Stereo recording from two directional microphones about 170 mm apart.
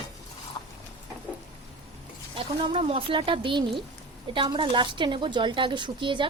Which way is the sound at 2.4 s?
30° right (ahead or behind).